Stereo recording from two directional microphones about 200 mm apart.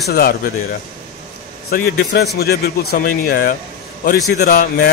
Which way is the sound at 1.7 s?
55° left (ahead or behind).